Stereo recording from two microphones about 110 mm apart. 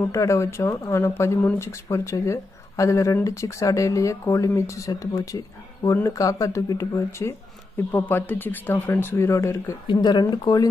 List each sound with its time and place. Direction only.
0.0 s speech: 25° left (ahead or behind)
9.9 s speech: 40° left (ahead or behind)